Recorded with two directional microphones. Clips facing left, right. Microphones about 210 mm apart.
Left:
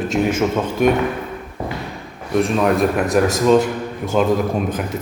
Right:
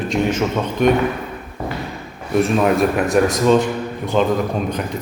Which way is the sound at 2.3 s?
5° right (ahead or behind).